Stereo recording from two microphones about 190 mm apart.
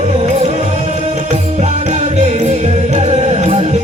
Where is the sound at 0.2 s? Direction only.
30° right (ahead or behind).